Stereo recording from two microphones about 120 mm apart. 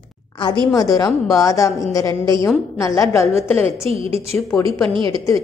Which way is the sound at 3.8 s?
55° right (ahead or behind).